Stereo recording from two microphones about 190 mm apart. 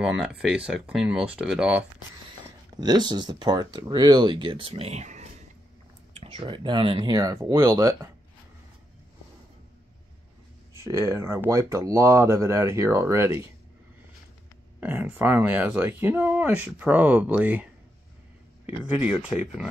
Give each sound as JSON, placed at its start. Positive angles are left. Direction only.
{"t": 0.0, "sound": "speech", "side_deg": -5}
{"t": 2.7, "sound": "speech", "side_deg": -20}
{"t": 10.7, "sound": "speech", "side_deg": -15}
{"t": 14.8, "sound": "speech", "side_deg": -10}
{"t": 19.2, "sound": "speech", "side_deg": -5}